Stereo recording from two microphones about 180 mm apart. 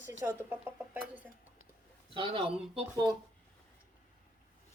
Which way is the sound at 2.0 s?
30° right (ahead or behind).